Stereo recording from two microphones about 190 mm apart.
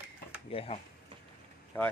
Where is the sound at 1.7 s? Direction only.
10° left (ahead or behind).